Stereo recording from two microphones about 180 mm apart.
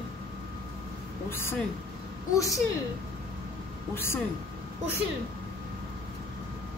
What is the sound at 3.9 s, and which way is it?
Speech, 15° left (ahead or behind).